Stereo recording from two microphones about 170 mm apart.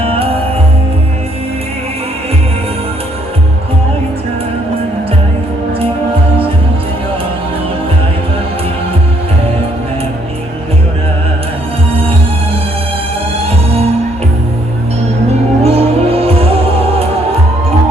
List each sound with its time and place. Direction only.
15.6 s music: 35° right (ahead or behind)